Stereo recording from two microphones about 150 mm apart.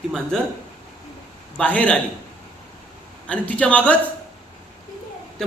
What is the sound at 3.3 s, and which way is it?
Speech, 10° left (ahead or behind).